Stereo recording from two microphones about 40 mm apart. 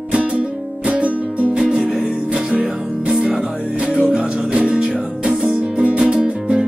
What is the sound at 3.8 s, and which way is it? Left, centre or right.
Music, right.